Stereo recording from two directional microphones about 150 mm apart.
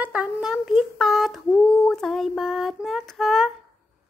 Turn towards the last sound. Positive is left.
turn(degrees=0)  # may be behind; listen again after turning